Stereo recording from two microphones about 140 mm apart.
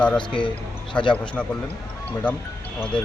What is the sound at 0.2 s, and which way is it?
Speech, 35° left (ahead or behind).